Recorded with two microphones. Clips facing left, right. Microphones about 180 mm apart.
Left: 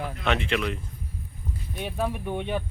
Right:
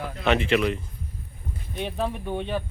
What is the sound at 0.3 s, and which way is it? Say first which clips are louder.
Speech: right 5 dB; centre (ahead or behind).